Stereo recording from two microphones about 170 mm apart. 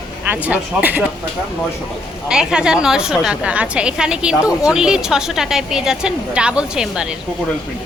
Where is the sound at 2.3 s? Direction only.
5° right (ahead or behind).